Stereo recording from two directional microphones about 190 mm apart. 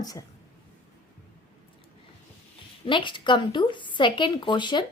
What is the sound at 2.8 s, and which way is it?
A woman's voice, 25° left (ahead or behind).